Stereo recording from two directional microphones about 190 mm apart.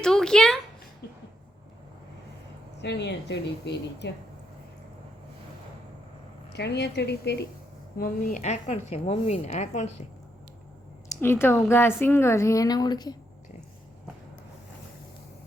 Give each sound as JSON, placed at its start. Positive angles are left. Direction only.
{"t": 0.0, "sound": "speech", "side_deg": 5}
{"t": 2.7, "sound": "speech", "side_deg": 65}
{"t": 6.5, "sound": "speech", "side_deg": 60}
{"t": 7.9, "sound": "a woman's voice", "side_deg": 50}
{"t": 11.1, "sound": "a woman's voice", "side_deg": 10}